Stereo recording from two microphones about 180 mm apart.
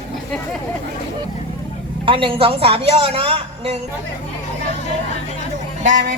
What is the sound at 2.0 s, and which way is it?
A woman's voice, 30° right (ahead or behind).